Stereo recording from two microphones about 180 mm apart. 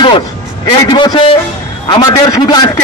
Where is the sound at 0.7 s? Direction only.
20° left (ahead or behind).